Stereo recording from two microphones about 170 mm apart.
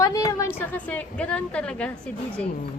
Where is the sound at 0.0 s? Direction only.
20° left (ahead or behind).